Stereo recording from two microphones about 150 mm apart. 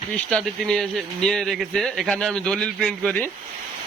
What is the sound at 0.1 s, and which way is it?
A man's voice, 5° left (ahead or behind).